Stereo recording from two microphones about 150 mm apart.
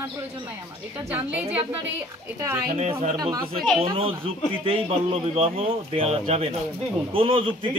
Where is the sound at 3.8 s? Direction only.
40° right (ahead or behind).